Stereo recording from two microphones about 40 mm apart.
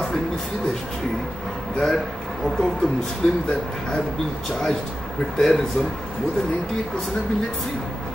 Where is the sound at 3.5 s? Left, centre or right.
Centre.